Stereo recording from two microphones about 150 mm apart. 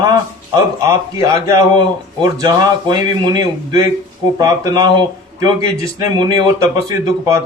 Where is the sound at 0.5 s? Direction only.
25° right (ahead or behind).